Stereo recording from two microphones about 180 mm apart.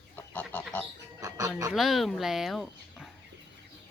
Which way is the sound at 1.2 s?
20° right (ahead or behind).